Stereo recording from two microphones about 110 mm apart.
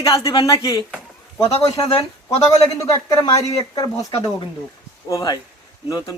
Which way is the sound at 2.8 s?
30° left (ahead or behind).